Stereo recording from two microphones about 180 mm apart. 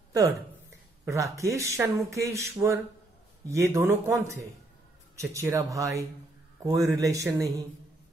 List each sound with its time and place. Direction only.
1.0 s speech: 15° right (ahead or behind)